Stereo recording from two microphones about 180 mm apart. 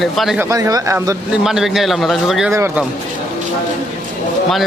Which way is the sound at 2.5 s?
15° right (ahead or behind).